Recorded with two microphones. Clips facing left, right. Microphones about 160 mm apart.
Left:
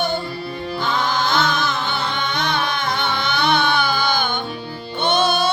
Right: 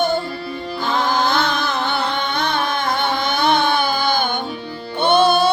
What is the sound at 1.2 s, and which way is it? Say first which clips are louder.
Music: right 1 dB; 60° right (ahead or behind).